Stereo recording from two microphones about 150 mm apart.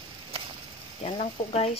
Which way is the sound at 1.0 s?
45° left (ahead or behind).